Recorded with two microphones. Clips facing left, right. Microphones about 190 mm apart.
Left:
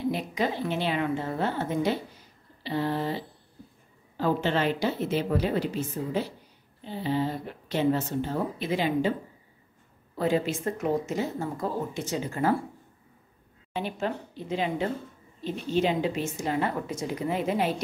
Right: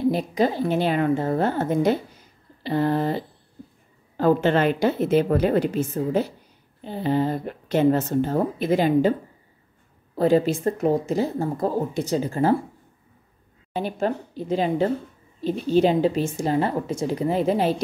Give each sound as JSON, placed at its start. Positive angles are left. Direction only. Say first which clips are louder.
{"t": 0.1, "sound": "a woman's voice", "louder": "right 6 dB", "side_deg": -35}
{"t": 10.1, "sound": "speech", "louder": "right 7 dB", "side_deg": -40}
{"t": 13.7, "sound": "speech", "louder": "right 6 dB", "side_deg": -40}